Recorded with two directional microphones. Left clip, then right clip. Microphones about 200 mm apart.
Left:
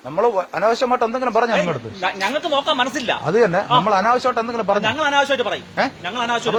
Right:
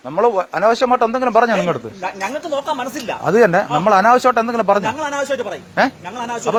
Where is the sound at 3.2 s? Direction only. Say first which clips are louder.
Right 5 dB; 55° right (ahead or behind).